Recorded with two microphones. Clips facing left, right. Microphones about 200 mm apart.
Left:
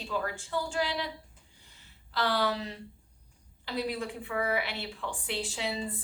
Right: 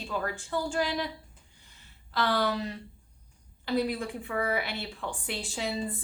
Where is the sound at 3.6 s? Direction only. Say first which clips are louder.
Right 4 dB; 50° right (ahead or behind).